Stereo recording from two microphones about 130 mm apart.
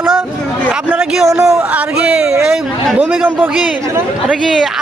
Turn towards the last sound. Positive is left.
turn(degrees=-5)  # may be behind; listen again after turning